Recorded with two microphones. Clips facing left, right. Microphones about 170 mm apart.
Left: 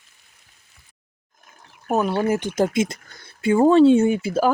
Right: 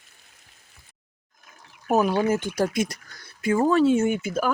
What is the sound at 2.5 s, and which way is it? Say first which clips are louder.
Speech: left 4 dB; 25° left (ahead or behind).